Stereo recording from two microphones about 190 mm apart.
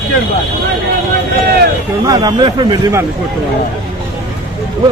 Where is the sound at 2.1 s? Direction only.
20° right (ahead or behind).